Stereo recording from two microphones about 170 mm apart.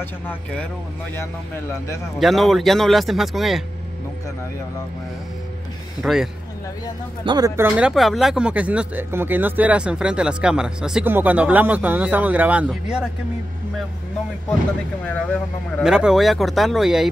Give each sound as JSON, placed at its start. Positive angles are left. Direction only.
{"t": 0.0, "sound": "a man's voice", "side_deg": 10}
{"t": 2.1, "sound": "speech", "side_deg": 0}
{"t": 6.0, "sound": "speech", "side_deg": -5}
{"t": 7.2, "sound": "speech", "side_deg": -20}
{"t": 7.6, "sound": "speech", "side_deg": -5}
{"t": 15.0, "sound": "a man's voice", "side_deg": 10}
{"t": 15.8, "sound": "speech", "side_deg": -5}